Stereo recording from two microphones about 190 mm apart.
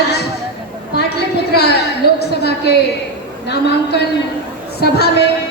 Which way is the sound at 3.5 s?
60° left (ahead or behind).